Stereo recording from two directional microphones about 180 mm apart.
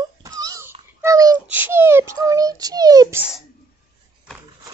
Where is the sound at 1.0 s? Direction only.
20° right (ahead or behind).